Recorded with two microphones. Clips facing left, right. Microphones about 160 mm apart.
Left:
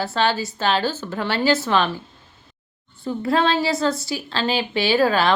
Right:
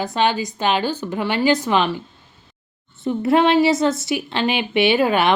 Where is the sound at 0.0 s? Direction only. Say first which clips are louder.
Right 2 dB; 15° right (ahead or behind).